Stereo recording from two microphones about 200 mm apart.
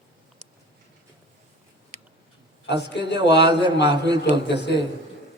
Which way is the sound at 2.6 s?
60° left (ahead or behind).